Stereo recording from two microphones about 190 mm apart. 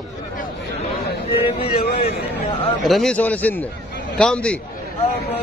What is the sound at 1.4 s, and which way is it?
Speech, 30° left (ahead or behind).